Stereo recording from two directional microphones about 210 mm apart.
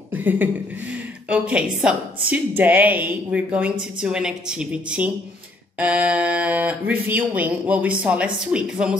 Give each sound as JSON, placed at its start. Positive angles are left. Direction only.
{"t": 0.1, "sound": "a woman's voice", "side_deg": -10}